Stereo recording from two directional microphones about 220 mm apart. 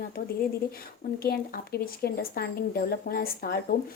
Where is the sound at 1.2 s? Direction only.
45° left (ahead or behind).